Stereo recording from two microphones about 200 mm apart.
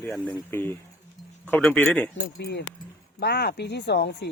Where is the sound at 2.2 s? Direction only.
55° left (ahead or behind).